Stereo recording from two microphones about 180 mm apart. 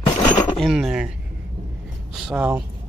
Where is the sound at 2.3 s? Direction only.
10° right (ahead or behind).